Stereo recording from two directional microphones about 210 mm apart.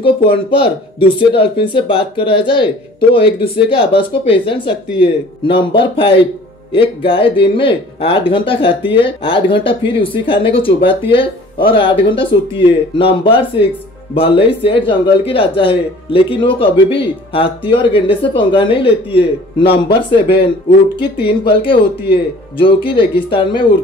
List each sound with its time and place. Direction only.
0.0 s speech: 25° left (ahead or behind)
21.5 s speech: 25° left (ahead or behind)